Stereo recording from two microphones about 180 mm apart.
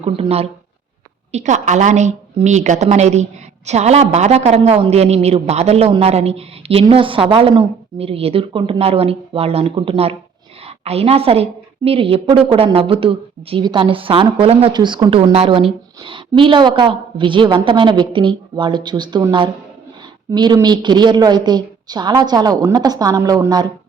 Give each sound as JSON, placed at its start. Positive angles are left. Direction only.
{"t": 0.0, "sound": "a woman's voice", "side_deg": -35}